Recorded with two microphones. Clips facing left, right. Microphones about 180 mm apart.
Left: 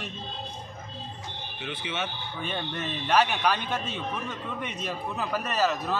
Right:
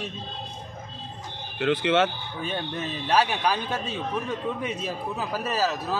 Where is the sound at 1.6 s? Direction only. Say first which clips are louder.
Right 13 dB; 90° right.